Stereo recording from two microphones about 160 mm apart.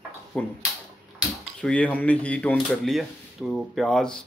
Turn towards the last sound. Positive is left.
turn(degrees=5)  # may be behind; listen again after turning